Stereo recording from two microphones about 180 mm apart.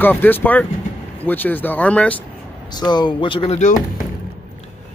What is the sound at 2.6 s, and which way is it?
Speech, 25° left (ahead or behind).